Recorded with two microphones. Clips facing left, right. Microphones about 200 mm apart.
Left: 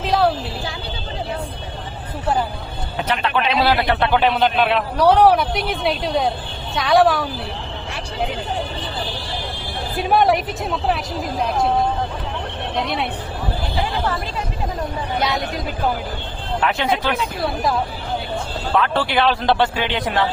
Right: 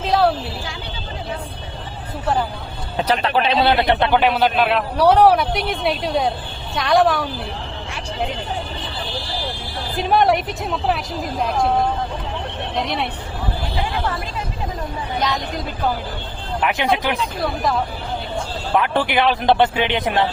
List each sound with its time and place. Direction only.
0.0 s a sound: centre (ahead or behind)
3.0 s speech: 35° right (ahead or behind)
4.2 s a man's voice: 5° right (ahead or behind)
9.9 s a man's voice: 5° left (ahead or behind)
12.7 s a man's voice: centre (ahead or behind)
16.6 s speech: 15° right (ahead or behind)
18.8 s speech: 15° right (ahead or behind)